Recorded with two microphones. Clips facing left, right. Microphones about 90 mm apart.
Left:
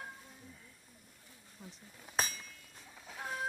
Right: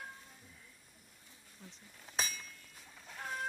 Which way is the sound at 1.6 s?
10° left (ahead or behind).